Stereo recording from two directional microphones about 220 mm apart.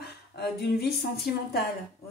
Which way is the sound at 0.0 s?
45° left (ahead or behind).